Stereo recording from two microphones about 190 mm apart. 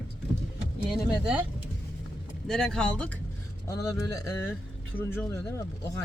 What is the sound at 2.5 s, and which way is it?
Speech, 5° left (ahead or behind).